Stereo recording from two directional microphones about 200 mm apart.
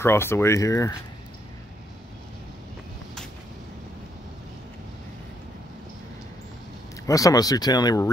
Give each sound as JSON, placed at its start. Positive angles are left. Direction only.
{"t": 0.0, "sound": "speech", "side_deg": 10}
{"t": 7.1, "sound": "speech", "side_deg": 15}